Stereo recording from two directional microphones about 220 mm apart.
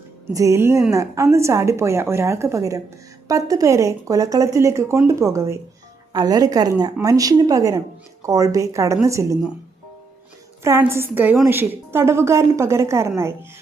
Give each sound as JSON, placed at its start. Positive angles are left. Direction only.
{"t": 0.3, "sound": "a woman's voice", "side_deg": -15}
{"t": 10.6, "sound": "a woman's voice", "side_deg": -10}